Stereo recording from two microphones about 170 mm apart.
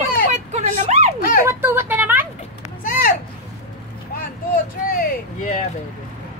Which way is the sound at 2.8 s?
55° left (ahead or behind).